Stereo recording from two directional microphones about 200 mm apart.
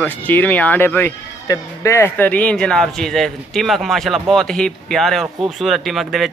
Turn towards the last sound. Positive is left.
turn(degrees=0)  # may be behind; listen again after turning